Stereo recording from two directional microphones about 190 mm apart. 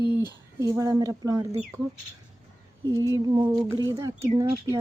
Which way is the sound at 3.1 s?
20° right (ahead or behind).